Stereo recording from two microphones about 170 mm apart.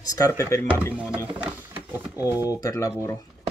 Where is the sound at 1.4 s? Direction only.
10° right (ahead or behind).